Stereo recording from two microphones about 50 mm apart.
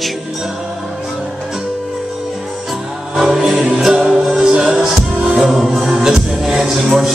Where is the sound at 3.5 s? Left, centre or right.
Right.